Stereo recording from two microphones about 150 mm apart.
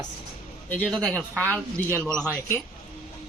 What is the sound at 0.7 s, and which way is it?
Speech, 10° left (ahead or behind).